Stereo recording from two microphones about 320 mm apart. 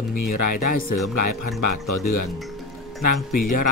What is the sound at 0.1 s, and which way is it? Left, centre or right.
Speech, left.